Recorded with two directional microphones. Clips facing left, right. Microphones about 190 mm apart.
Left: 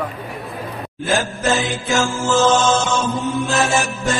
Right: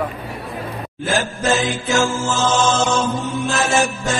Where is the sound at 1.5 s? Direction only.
Centre (ahead or behind).